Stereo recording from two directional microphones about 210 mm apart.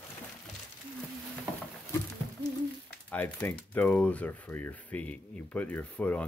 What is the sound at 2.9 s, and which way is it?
Speech, 5° left (ahead or behind).